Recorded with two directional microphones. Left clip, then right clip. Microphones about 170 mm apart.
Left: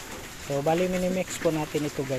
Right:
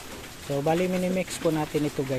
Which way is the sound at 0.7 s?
25° right (ahead or behind).